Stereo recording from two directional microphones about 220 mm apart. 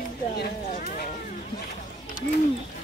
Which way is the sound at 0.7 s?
35° left (ahead or behind).